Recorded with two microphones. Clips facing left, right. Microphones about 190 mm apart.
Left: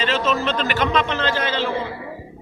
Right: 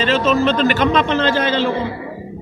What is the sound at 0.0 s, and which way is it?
A man's voice, 35° right (ahead or behind).